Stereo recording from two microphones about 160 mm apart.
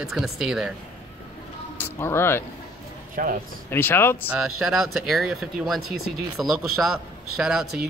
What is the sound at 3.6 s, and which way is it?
Speech, 15° left (ahead or behind).